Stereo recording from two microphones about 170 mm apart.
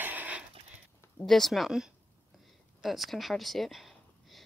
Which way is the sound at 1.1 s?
Centre (ahead or behind).